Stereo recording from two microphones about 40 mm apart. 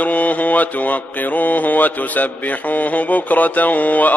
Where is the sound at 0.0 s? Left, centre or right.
Left.